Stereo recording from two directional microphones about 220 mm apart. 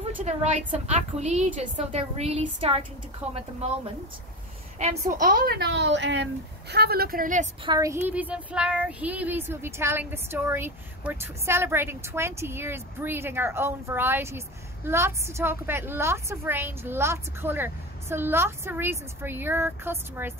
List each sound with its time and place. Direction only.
0.2 s a woman's voice: 30° right (ahead or behind)
7.6 s child singing: 15° right (ahead or behind)